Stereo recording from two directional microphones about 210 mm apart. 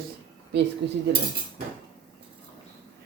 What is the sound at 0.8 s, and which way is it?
Speech, 55° right (ahead or behind).